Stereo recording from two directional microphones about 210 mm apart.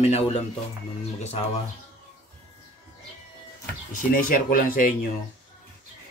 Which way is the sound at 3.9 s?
40° left (ahead or behind).